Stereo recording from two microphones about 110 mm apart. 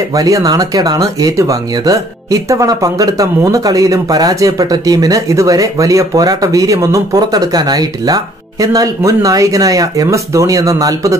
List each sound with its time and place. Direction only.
0.1 s speech: 30° right (ahead or behind)